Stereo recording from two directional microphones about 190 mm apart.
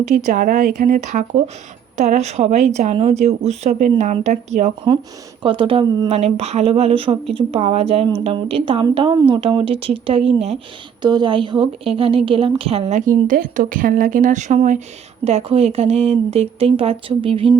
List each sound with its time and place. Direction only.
0.1 s a woman's voice: 45° right (ahead or behind)
5.4 s a woman's voice: 25° right (ahead or behind)